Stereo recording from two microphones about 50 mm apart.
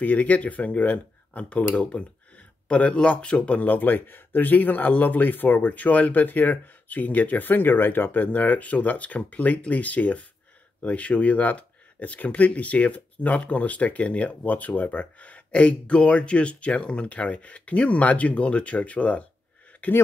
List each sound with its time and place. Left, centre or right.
0.0 s speech: left
3.6 s speech: left